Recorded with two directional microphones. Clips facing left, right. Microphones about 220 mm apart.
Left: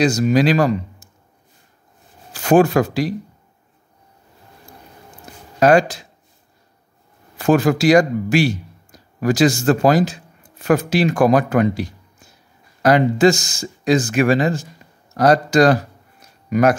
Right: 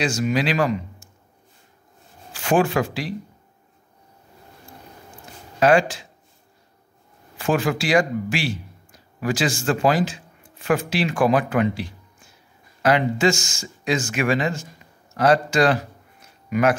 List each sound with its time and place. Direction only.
0.0 s speech: 40° left (ahead or behind)
2.3 s speech: 40° left (ahead or behind)
5.6 s speech: 40° left (ahead or behind)
7.3 s speech: 40° left (ahead or behind)
15.1 s a sound: 40° left (ahead or behind)